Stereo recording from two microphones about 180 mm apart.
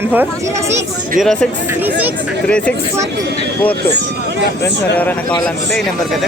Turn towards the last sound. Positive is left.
turn(degrees=10)  # may be behind; listen again after turning